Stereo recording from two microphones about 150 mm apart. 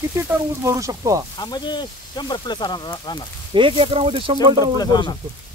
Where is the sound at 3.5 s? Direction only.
35° right (ahead or behind).